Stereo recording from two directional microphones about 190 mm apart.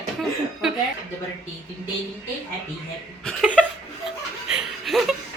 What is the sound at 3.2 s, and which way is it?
Laughter, 5° left (ahead or behind).